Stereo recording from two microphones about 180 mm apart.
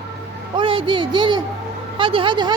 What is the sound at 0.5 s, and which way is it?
A woman's voice, 30° right (ahead or behind).